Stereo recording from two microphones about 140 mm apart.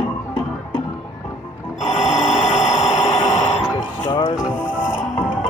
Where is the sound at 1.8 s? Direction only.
50° left (ahead or behind).